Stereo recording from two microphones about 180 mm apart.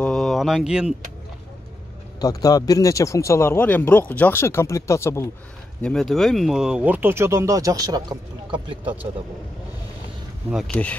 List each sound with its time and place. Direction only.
0.0 s a sound: 5° left (ahead or behind)
2.1 s a man's voice: 20° left (ahead or behind)
5.8 s speech: 5° left (ahead or behind); by 8.9 s 30° right (ahead or behind)
10.5 s a man's voice: centre (ahead or behind)